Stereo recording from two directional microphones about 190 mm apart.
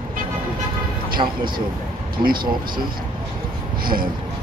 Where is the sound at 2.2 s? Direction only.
50° right (ahead or behind).